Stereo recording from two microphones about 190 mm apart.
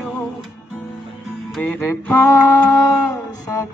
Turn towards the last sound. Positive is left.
turn(degrees=20)  # may be behind; listen again after turning